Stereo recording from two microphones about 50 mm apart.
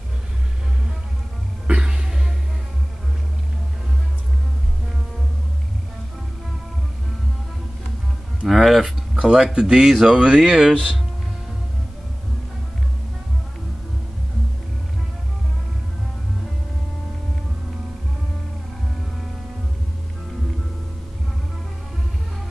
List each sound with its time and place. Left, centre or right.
1.7 s music: centre
8.5 s speech: centre